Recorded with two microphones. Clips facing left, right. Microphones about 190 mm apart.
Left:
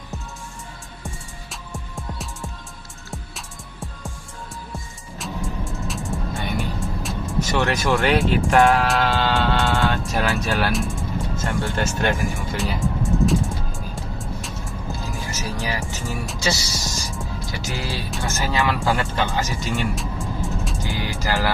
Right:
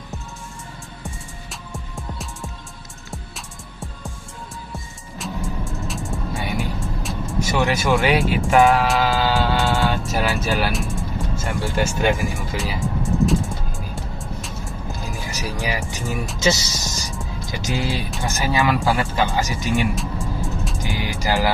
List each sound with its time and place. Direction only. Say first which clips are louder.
1.0 s music: even; centre (ahead or behind)
7.3 s speech: right 1 dB; 5° right (ahead or behind)
12.4 s music: left 1 dB; centre (ahead or behind)
15.0 s music: right 2 dB; 15° right (ahead or behind)
15.9 s speech: right 2 dB; 15° right (ahead or behind)
16.9 s music: even; centre (ahead or behind)
17.5 s speech: right 6 dB; 20° right (ahead or behind)
20.0 s music: right 1 dB; centre (ahead or behind)
20.7 s music: right 1 dB; 15° right (ahead or behind)